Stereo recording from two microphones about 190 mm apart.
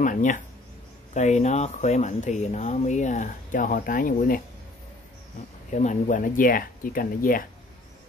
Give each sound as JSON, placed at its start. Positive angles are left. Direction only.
{"t": 0.0, "sound": "speech", "side_deg": 40}
{"t": 5.7, "sound": "speech", "side_deg": 40}